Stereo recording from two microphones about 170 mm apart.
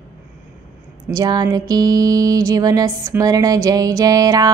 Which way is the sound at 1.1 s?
25° right (ahead or behind).